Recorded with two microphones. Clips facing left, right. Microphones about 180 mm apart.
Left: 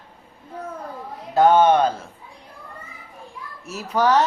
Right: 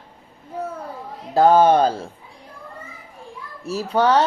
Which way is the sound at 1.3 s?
35° right (ahead or behind).